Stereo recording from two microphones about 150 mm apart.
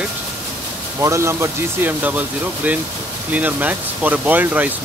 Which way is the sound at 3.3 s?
10° right (ahead or behind).